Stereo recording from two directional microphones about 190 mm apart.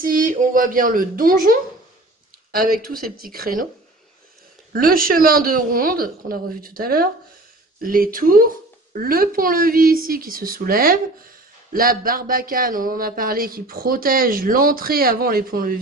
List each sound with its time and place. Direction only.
0.0 s speech: 45° right (ahead or behind)
4.7 s speech: 50° right (ahead or behind)